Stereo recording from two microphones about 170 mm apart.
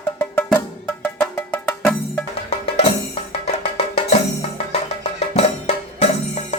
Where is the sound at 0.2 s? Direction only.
10° left (ahead or behind).